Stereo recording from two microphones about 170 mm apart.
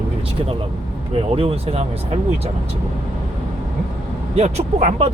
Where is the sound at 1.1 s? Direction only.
35° right (ahead or behind).